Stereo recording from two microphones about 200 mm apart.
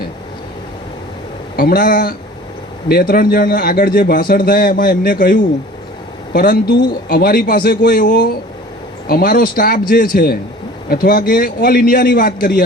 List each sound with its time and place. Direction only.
1.5 s a man's voice: 45° left (ahead or behind)